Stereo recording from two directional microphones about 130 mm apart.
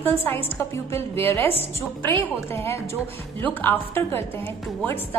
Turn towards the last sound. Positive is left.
turn(degrees=15)  # may be behind; listen again after turning